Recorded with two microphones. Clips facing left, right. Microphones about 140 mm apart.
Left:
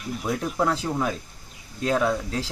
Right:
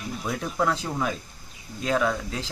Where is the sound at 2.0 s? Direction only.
35° left (ahead or behind).